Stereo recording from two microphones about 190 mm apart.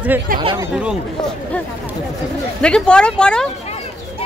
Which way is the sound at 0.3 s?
45° right (ahead or behind).